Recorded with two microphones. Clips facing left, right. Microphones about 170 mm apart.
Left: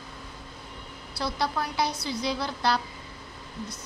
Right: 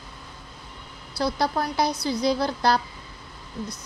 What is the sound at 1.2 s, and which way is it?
A woman's voice, 40° right (ahead or behind).